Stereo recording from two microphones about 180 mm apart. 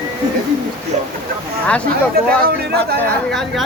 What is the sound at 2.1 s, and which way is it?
Speech, 60° right (ahead or behind).